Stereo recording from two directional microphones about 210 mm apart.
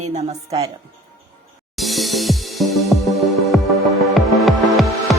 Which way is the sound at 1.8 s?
Centre (ahead or behind).